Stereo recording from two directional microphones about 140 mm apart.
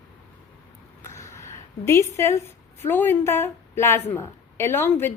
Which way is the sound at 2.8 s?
15° left (ahead or behind).